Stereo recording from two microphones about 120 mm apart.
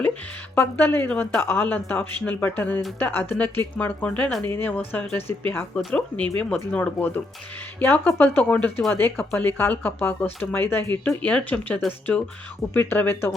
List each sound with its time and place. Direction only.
0.5 s speech: 15° left (ahead or behind)